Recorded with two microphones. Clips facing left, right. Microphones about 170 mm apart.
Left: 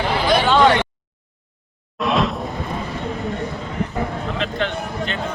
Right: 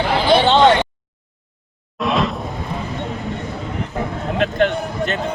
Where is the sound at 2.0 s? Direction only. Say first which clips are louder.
Even; centre (ahead or behind).